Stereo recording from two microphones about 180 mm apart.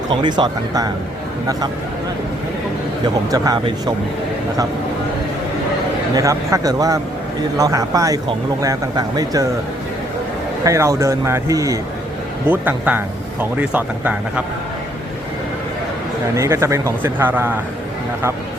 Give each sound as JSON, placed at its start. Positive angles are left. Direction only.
{"t": 0.1, "sound": "speech", "side_deg": -25}
{"t": 3.3, "sound": "speech", "side_deg": -20}
{"t": 6.1, "sound": "speech", "side_deg": -20}
{"t": 10.6, "sound": "speech", "side_deg": -15}
{"t": 16.3, "sound": "speech", "side_deg": -15}